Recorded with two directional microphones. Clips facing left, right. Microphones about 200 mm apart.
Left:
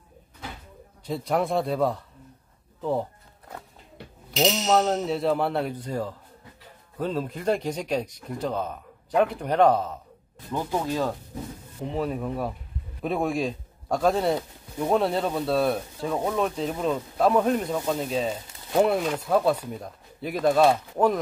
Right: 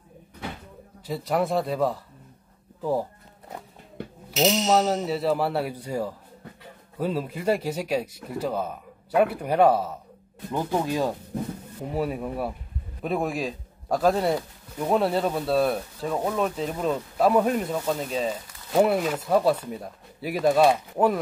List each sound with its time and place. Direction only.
1.0 s speech: centre (ahead or behind)
4.3 s speech: 5° right (ahead or behind)
17.7 s speech: 15° left (ahead or behind)
18.7 s speech: 5° right (ahead or behind)
19.5 s speech: 10° left (ahead or behind)
19.8 s speech: 5° right (ahead or behind)